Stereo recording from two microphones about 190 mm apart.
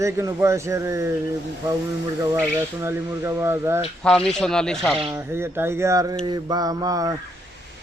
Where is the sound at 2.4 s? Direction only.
15° right (ahead or behind).